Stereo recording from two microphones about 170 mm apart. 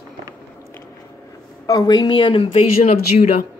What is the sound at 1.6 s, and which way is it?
Speech, 20° left (ahead or behind).